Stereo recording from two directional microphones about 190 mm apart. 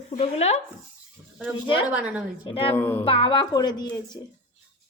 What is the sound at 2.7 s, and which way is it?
Speech, 10° left (ahead or behind).